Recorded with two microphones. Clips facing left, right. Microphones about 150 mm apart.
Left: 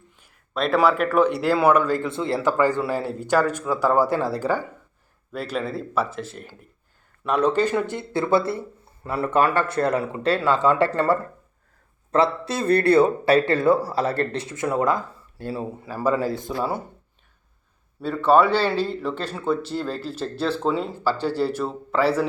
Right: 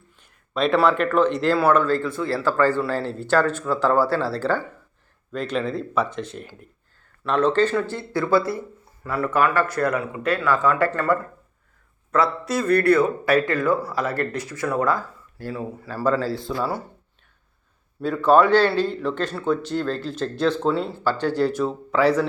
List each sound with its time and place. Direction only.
0.2 s speech: centre (ahead or behind)
7.3 s speech: 10° left (ahead or behind)
18.0 s speech: centre (ahead or behind)